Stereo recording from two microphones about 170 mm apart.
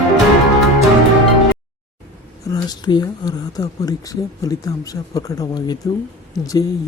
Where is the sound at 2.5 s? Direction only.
25° left (ahead or behind).